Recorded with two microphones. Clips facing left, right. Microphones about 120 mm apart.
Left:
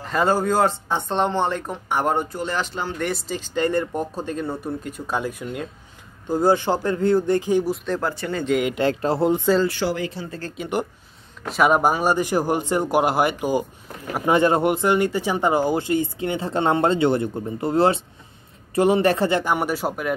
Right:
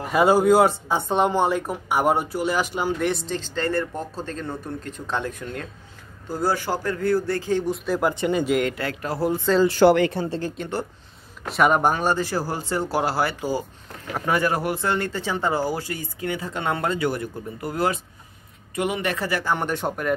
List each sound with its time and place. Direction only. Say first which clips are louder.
0.0 s speech: right 3 dB; 10° right (ahead or behind)
3.0 s speech: right 1 dB; centre (ahead or behind)
3.3 s speech: left 3 dB; 15° left (ahead or behind)
7.7 s speech: even; 5° right (ahead or behind)
8.0 s speech: right 4 dB; 20° right (ahead or behind)
8.7 s speech: left 7 dB; 25° left (ahead or behind)
9.8 s speech: right 8 dB; 60° right (ahead or behind)
10.6 s speech: left 3 dB; 5° left (ahead or behind); by 19.4 s 25° left (ahead or behind)
19.4 s speech: left 2 dB; 10° left (ahead or behind)